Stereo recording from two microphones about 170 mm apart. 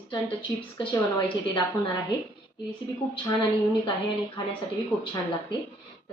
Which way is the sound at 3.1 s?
30° left (ahead or behind).